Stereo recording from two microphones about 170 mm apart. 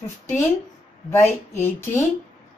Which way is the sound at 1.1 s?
15° left (ahead or behind).